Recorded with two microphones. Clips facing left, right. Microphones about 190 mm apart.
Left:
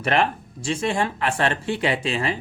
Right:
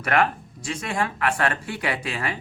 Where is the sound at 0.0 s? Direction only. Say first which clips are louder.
Left 1 dB; 25° left (ahead or behind).